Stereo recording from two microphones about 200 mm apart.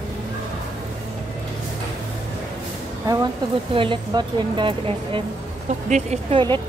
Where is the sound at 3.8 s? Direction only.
25° right (ahead or behind).